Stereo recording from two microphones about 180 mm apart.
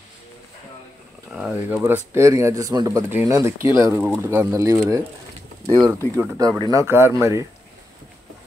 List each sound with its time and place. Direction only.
1.3 s speech: 10° right (ahead or behind)